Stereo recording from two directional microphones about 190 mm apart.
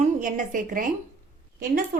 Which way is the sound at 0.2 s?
45° right (ahead or behind).